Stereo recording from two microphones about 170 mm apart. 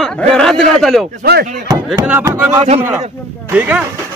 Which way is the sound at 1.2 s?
65° right (ahead or behind).